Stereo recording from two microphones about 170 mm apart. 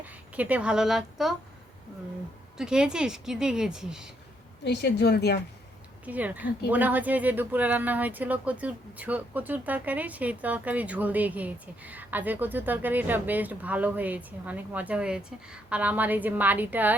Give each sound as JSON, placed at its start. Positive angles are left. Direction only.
{"t": 0.0, "sound": "a woman's voice", "side_deg": -10}
{"t": 2.6, "sound": "a woman's voice", "side_deg": -5}
{"t": 4.6, "sound": "a woman's voice", "side_deg": 80}
{"t": 6.1, "sound": "speech", "side_deg": -10}